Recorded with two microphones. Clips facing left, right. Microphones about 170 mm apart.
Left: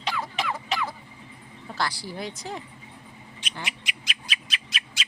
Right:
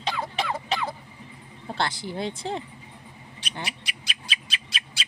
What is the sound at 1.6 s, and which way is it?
Speech, 25° right (ahead or behind).